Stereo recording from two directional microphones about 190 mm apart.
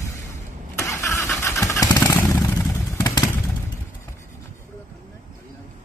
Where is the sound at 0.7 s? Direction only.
15° left (ahead or behind).